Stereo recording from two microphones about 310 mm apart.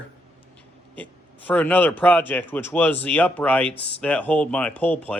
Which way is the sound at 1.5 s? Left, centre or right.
Centre.